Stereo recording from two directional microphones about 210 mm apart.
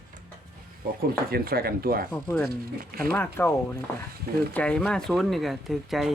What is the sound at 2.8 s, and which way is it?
Speech, 45° right (ahead or behind).